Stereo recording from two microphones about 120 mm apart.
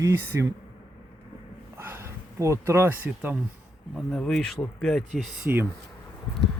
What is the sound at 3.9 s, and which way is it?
Speech, 5° left (ahead or behind).